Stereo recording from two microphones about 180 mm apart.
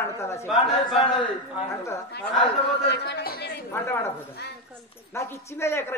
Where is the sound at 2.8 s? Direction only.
70° left (ahead or behind).